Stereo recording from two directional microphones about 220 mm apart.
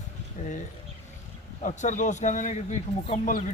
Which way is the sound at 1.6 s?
35° left (ahead or behind).